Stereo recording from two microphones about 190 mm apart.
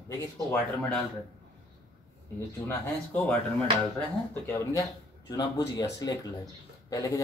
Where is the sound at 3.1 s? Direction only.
10° left (ahead or behind).